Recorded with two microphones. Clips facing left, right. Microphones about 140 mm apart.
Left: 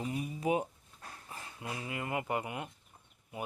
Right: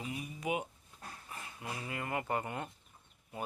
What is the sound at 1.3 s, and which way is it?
Speech, 25° left (ahead or behind).